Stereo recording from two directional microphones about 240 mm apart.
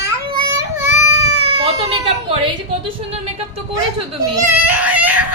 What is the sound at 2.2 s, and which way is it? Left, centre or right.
Speech, right.